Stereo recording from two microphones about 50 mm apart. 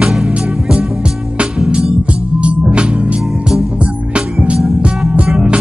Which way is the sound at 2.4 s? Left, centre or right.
Right.